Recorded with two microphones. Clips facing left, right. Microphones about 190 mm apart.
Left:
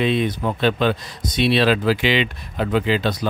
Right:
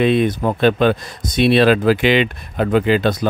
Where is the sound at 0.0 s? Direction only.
50° right (ahead or behind).